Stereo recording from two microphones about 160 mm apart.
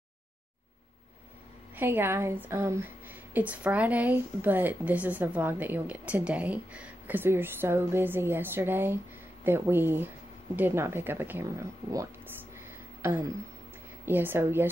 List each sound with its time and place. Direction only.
1.8 s speech: 15° right (ahead or behind)
13.0 s a sound: 15° right (ahead or behind)
14.0 s speech: 10° right (ahead or behind)